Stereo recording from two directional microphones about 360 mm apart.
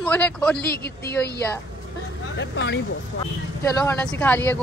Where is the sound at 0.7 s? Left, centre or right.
Left.